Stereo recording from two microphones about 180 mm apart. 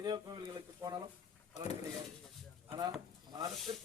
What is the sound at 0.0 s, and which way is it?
A man's voice, 25° right (ahead or behind).